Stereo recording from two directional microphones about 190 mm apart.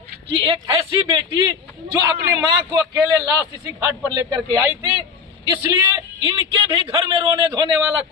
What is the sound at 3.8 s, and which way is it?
Speech, 15° right (ahead or behind).